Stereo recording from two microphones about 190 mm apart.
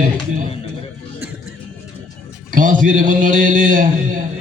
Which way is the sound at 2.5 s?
45° right (ahead or behind).